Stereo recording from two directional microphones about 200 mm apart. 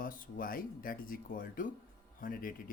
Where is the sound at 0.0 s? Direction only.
45° left (ahead or behind).